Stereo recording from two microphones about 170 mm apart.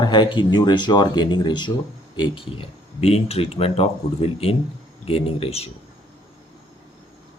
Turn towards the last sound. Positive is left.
turn(degrees=35)  # may be behind; listen again after turning